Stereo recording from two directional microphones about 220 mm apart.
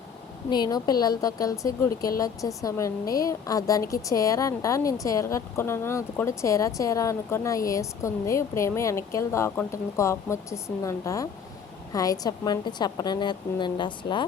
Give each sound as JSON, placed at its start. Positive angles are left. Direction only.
{"t": 0.5, "sound": "a woman's voice", "side_deg": 20}